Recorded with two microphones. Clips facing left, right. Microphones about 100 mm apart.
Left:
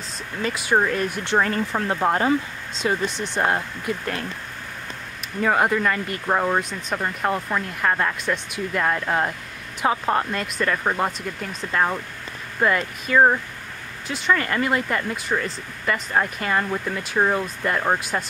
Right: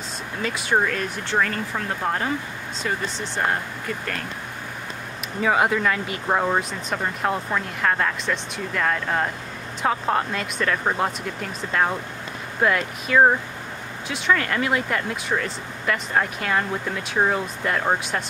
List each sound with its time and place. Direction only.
0.4 s speech: centre (ahead or behind)
5.4 s speech: centre (ahead or behind)